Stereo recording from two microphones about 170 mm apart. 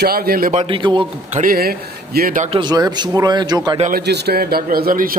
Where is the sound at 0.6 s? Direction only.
30° right (ahead or behind).